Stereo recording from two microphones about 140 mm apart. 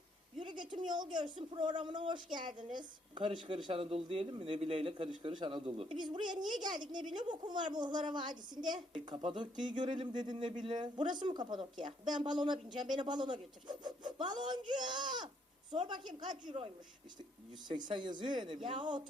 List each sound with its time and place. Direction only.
0.3 s a woman's voice: 35° right (ahead or behind)
15.7 s a woman's voice: 45° right (ahead or behind)
17.7 s a woman's voice: 30° right (ahead or behind)